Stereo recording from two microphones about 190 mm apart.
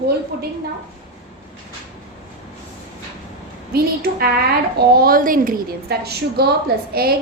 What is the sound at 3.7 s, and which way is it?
A woman's voice, 55° right (ahead or behind).